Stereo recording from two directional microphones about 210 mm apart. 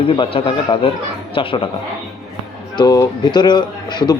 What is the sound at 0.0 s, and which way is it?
Speech, 25° left (ahead or behind).